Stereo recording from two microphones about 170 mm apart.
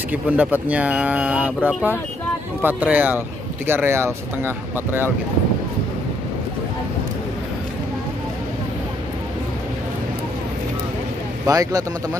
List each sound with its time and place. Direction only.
0.1 s speech: 10° right (ahead or behind)
11.4 s speech: 20° right (ahead or behind)